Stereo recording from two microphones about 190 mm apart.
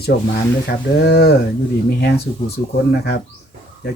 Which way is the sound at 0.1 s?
50° left (ahead or behind).